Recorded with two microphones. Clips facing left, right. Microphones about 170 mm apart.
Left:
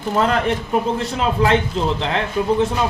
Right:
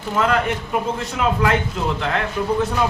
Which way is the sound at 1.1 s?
30° left (ahead or behind).